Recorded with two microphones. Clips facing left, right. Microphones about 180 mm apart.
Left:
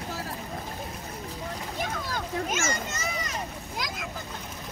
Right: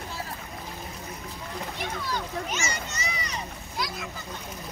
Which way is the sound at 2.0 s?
45° left (ahead or behind).